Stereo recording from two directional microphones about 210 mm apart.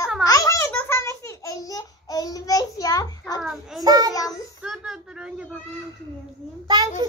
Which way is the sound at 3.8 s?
20° right (ahead or behind).